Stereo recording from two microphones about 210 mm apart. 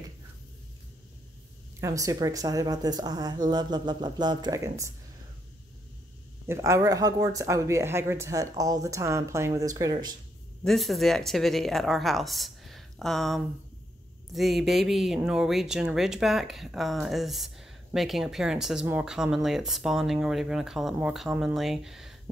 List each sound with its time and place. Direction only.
1.8 s speech: 15° right (ahead or behind)
6.4 s speech: 10° right (ahead or behind)
10.6 s speech: centre (ahead or behind)